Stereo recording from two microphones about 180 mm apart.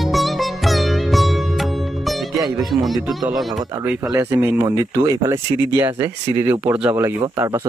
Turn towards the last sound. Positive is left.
turn(degrees=-15)  # may be behind; listen again after turning